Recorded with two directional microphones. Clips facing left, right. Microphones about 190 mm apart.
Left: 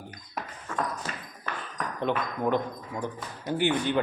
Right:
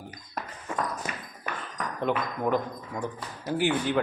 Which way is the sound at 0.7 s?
15° right (ahead or behind).